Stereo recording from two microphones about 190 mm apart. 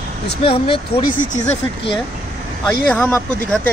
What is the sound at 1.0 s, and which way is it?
Speech, 45° left (ahead or behind).